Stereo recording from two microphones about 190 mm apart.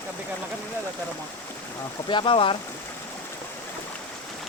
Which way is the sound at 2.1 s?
25° left (ahead or behind).